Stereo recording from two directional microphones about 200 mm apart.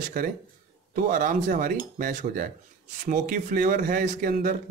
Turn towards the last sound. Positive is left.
turn(degrees=-45)  # may be behind; listen again after turning